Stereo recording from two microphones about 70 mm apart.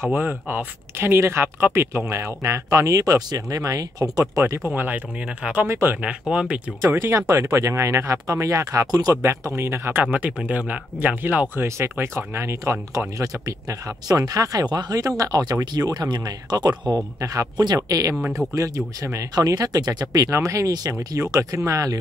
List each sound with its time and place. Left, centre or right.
0.1 s speech: right
4.7 s speech: right
5.7 s speech: right
6.0 s speech: centre
6.8 s speech: right
10.1 s speech: right
15.6 s speech: right
20.2 s speech: right
21.2 s speech: right